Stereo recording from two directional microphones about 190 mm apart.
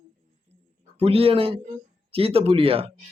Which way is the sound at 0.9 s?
30° right (ahead or behind).